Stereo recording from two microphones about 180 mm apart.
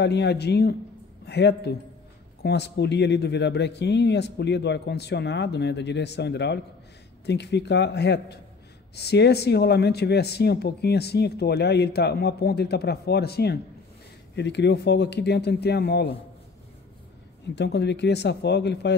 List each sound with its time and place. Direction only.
0.0 s speech: 70° left (ahead or behind)
17.6 s speech: 70° left (ahead or behind)